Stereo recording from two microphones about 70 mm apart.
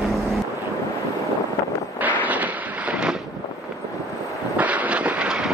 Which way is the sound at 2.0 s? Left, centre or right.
Right.